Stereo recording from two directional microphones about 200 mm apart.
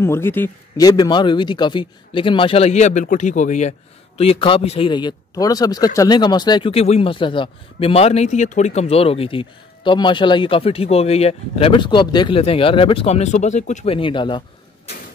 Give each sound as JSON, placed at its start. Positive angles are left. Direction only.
{"t": 0.0, "sound": "speech", "side_deg": 10}